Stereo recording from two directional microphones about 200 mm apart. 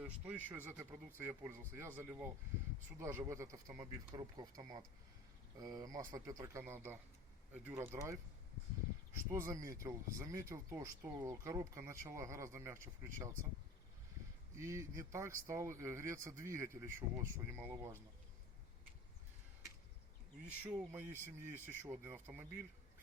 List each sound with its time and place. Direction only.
0.0 s speech: 10° right (ahead or behind)
14.5 s speech: 15° right (ahead or behind)
20.7 s speech: 10° right (ahead or behind)